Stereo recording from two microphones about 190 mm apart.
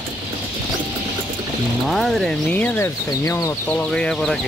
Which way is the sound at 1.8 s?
Centre (ahead or behind).